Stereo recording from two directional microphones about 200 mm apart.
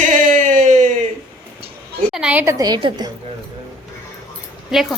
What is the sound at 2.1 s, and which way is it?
Speech, 5° right (ahead or behind).